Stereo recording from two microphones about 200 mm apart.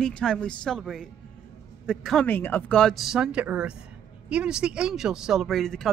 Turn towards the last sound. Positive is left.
turn(degrees=0)  # may be behind; listen again after turning